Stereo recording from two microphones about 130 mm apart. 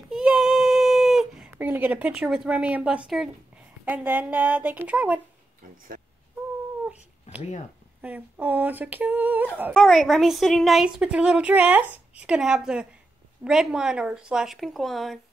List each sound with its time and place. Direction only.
0.1 s a sound: 5° right (ahead or behind)
1.5 s humming: 15° right (ahead or behind)
5.6 s speech: 85° right
8.0 s humming: 15° right (ahead or behind)
9.8 s a woman's voice: 5° left (ahead or behind)